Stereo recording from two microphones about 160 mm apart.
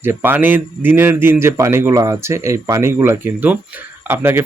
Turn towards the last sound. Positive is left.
turn(degrees=-15)  # may be behind; listen again after turning